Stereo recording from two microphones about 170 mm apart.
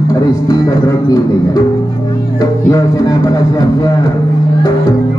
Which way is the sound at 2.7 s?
20° left (ahead or behind).